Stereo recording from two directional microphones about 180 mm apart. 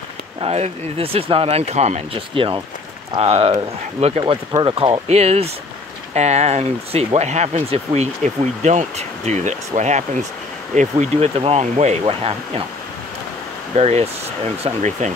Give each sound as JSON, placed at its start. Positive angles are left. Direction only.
{"t": 0.4, "sound": "speech", "side_deg": -35}
{"t": 13.7, "sound": "speech", "side_deg": -35}